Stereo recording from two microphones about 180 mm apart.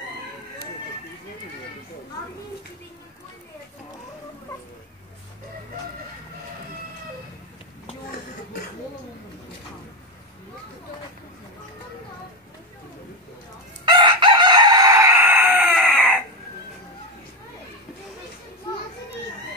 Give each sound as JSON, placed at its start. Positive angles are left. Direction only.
{"t": 13.8, "sound": "chicken", "side_deg": -25}